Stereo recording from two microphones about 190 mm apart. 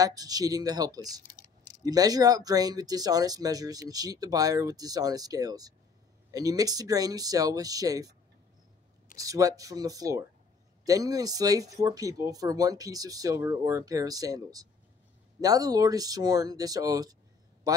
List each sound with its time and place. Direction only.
0.0 s speech: 20° right (ahead or behind)
1.2 s typing: 40° left (ahead or behind)
1.9 s speech: 20° right (ahead or behind)
9.2 s a man's voice: 20° right (ahead or behind)